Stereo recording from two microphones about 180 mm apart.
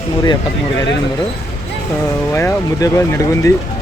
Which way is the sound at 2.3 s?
15° left (ahead or behind).